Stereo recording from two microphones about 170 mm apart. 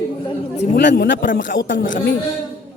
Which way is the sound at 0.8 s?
90° left.